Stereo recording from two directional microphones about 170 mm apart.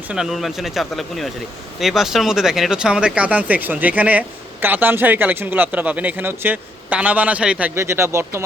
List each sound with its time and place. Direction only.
0.1 s speech: centre (ahead or behind)